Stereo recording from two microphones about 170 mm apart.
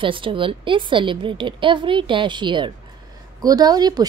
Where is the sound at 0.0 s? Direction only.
30° right (ahead or behind).